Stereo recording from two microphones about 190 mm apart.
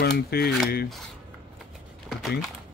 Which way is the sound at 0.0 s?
55° left (ahead or behind).